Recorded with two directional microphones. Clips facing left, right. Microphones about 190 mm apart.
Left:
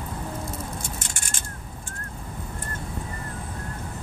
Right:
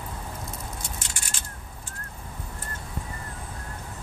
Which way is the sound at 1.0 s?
50° left (ahead or behind).